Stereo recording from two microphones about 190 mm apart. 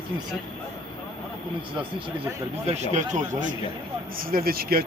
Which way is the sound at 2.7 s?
40° right (ahead or behind).